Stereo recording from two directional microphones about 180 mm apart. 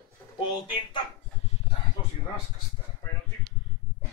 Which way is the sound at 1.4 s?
35° left (ahead or behind).